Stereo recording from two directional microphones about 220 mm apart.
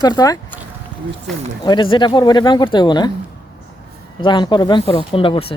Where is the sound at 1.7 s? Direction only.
20° left (ahead or behind).